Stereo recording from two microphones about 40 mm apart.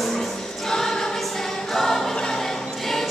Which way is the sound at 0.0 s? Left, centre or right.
Centre.